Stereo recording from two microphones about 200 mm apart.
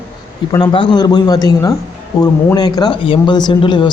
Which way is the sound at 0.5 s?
20° left (ahead or behind).